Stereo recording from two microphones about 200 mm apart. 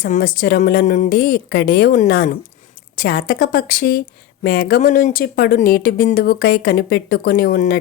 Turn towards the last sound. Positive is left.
turn(degrees=50)  # may be behind; listen again after turning